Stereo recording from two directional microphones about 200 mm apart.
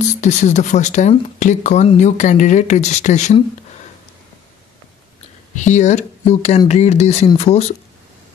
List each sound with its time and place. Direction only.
0.0 s speech: 35° left (ahead or behind)
5.6 s speech: 35° left (ahead or behind)